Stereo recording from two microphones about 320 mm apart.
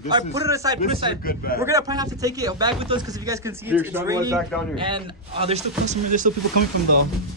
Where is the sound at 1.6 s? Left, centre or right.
Centre.